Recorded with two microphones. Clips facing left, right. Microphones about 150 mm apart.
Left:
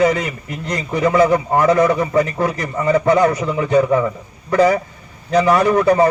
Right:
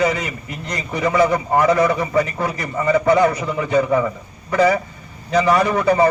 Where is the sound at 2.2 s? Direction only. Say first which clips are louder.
Left 3 dB; 45° left (ahead or behind).